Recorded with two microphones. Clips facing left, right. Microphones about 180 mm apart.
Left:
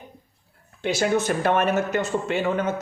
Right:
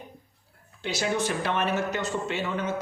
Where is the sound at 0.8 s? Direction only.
50° left (ahead or behind).